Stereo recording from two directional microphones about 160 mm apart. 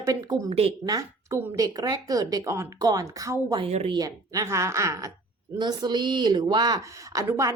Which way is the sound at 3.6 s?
40° right (ahead or behind).